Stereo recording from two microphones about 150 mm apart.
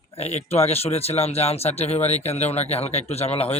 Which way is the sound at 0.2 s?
45° left (ahead or behind).